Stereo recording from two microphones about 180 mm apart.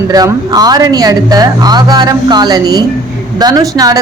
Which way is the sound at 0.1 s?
20° right (ahead or behind).